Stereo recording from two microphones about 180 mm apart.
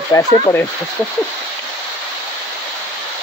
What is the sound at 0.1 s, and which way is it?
Speech, 15° left (ahead or behind).